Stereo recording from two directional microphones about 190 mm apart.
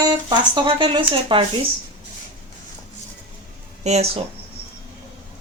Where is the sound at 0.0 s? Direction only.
20° right (ahead or behind).